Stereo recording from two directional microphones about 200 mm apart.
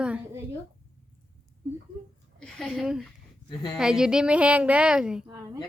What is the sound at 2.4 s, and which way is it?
A woman's voice, centre (ahead or behind).